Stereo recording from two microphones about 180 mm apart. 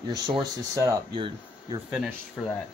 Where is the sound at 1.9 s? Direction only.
5° right (ahead or behind).